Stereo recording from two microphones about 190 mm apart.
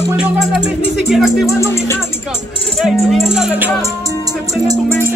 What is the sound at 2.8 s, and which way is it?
Music, centre (ahead or behind).